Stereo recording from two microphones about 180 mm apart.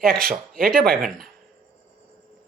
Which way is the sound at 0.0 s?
55° right (ahead or behind).